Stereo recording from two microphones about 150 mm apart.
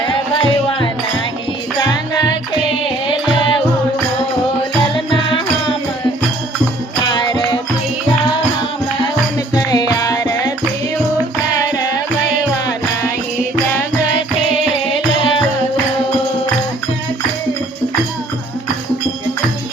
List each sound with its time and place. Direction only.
5.1 s music: 35° left (ahead or behind)
7.1 s music: 30° left (ahead or behind)
9.6 s music: 25° left (ahead or behind)